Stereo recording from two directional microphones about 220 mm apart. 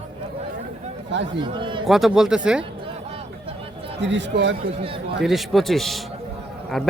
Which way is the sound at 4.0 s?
55° right (ahead or behind).